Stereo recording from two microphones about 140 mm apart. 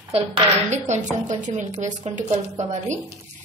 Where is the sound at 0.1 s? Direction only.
50° right (ahead or behind).